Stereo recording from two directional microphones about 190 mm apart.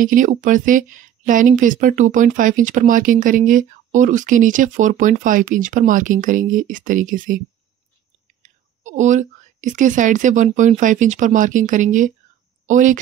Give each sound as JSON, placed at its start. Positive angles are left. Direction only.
{"t": 0.0, "sound": "a woman's voice", "side_deg": -45}